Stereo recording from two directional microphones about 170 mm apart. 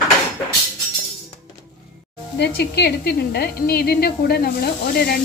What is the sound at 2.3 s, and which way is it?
A woman's voice, 75° left (ahead or behind).